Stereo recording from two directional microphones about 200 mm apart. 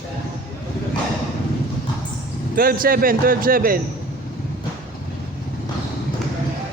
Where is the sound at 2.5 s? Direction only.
45° right (ahead or behind).